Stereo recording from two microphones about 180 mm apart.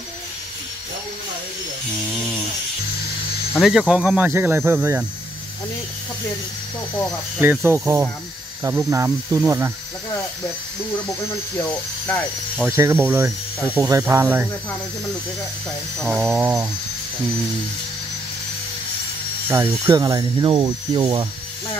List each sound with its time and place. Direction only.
3.6 s speech: centre (ahead or behind)
7.3 s speech: 10° right (ahead or behind)
11.7 s speech: 10° left (ahead or behind)
12.5 s speech: 15° right (ahead or behind)
16.1 s speech: 10° right (ahead or behind)
19.5 s speech: 20° right (ahead or behind)